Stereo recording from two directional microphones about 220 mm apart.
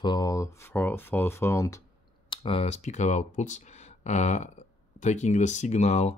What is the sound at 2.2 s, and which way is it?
Speech, 25° left (ahead or behind).